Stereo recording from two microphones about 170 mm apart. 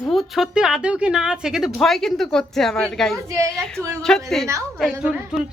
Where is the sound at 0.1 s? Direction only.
Centre (ahead or behind).